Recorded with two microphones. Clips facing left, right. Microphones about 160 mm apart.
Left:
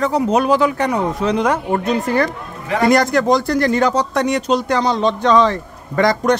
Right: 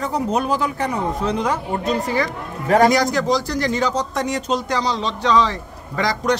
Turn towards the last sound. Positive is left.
turn(degrees=55)  # may be behind; listen again after turning